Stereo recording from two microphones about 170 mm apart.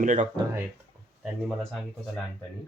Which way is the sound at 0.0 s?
50° right (ahead or behind).